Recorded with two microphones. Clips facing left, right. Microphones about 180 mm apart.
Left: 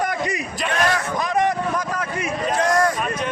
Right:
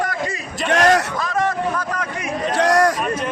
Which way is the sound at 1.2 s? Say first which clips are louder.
Left 1 dB; 15° left (ahead or behind).